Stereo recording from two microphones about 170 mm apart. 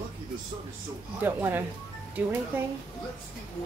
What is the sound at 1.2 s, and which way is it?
Speech, 10° right (ahead or behind).